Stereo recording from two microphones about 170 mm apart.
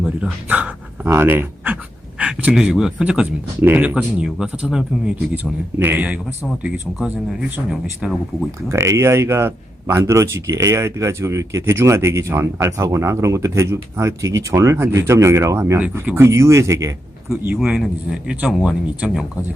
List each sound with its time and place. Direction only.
0.0 s a man's voice: 5° right (ahead or behind)
8.7 s a man's voice: 15° right (ahead or behind)
17.2 s speech: 5° right (ahead or behind)